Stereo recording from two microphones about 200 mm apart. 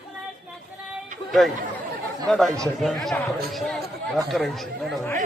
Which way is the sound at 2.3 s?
Centre (ahead or behind).